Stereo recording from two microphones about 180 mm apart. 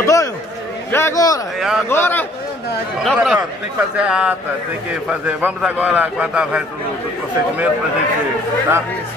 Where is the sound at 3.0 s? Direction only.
5° right (ahead or behind).